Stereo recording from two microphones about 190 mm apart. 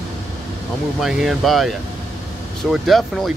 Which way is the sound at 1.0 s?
Centre (ahead or behind).